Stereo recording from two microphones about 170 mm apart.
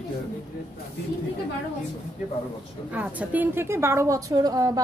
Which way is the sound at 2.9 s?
10° right (ahead or behind).